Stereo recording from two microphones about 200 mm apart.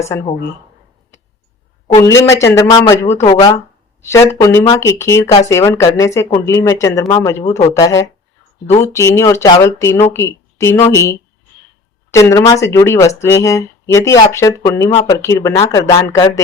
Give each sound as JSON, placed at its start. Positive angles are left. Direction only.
{"t": 2.0, "sound": "speech", "side_deg": 15}
{"t": 14.8, "sound": "speech", "side_deg": 25}